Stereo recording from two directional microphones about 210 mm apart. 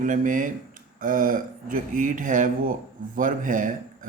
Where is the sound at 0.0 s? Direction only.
40° right (ahead or behind).